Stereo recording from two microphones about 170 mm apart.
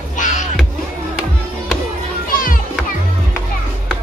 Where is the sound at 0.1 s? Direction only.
45° left (ahead or behind).